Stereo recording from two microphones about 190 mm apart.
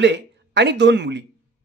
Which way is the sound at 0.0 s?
65° right (ahead or behind).